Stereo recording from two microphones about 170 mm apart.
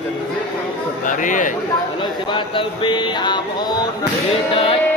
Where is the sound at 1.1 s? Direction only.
50° left (ahead or behind).